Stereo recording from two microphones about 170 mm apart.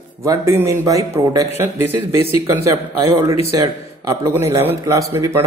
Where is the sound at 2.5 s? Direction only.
15° right (ahead or behind).